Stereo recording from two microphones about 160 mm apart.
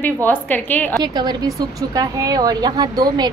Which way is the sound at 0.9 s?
25° right (ahead or behind).